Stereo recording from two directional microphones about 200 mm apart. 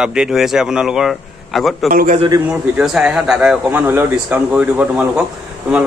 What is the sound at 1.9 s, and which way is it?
Speech, 40° right (ahead or behind).